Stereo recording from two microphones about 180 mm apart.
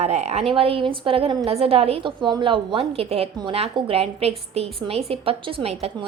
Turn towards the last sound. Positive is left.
turn(degrees=-35)  # may be behind; listen again after turning